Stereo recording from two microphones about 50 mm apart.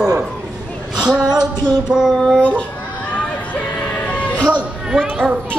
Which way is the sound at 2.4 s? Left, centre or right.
Left.